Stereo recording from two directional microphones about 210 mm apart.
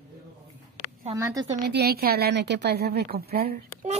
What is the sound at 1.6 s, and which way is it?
A woman's voice, 50° right (ahead or behind).